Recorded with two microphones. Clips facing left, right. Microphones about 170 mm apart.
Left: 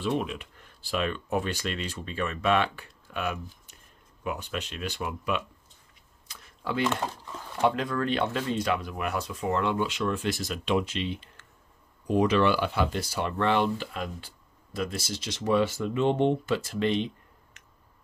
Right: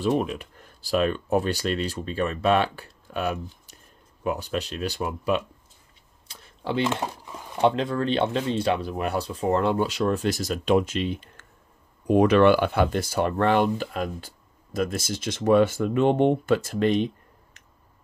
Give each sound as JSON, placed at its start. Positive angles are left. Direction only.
{"t": 0.0, "sound": "speech", "side_deg": -40}
{"t": 6.2, "sound": "a sound", "side_deg": -30}
{"t": 7.0, "sound": "speech", "side_deg": -15}
{"t": 7.6, "sound": "speech", "side_deg": -25}
{"t": 12.1, "sound": "speech", "side_deg": -60}